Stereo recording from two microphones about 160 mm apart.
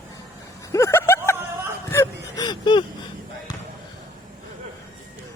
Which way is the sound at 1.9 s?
15° left (ahead or behind).